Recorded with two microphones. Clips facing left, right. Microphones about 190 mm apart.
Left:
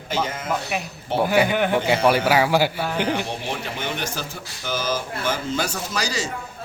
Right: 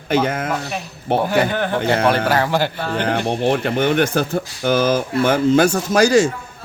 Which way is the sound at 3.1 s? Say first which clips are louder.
Right 7 dB; 55° right (ahead or behind).